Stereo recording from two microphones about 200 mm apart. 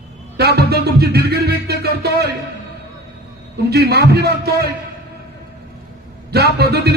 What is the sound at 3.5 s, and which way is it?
Music, 55° right (ahead or behind).